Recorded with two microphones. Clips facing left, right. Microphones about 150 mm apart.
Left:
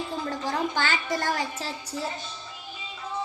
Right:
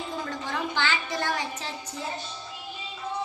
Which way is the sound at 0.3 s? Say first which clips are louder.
Left 3 dB; 40° left (ahead or behind).